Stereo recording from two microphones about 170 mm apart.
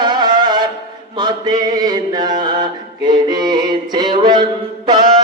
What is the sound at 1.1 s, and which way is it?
Mantra, 25° right (ahead or behind).